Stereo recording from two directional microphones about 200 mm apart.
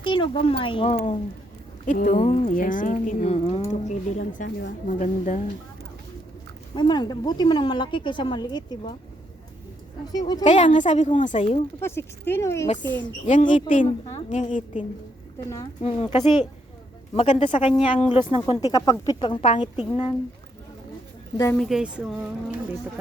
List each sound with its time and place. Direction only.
0.0 s a woman's voice: 25° left (ahead or behind)
1.8 s a woman's voice: 40° left (ahead or behind)
4.9 s a woman's voice: 40° left (ahead or behind)
6.7 s a woman's voice: 20° left (ahead or behind)
10.1 s a woman's voice: 20° left (ahead or behind)
10.4 s a woman's voice: 35° left (ahead or behind)
11.8 s speech: 10° left (ahead or behind)
14.3 s a woman's voice: 35° left (ahead or behind)
21.5 s speech: centre (ahead or behind)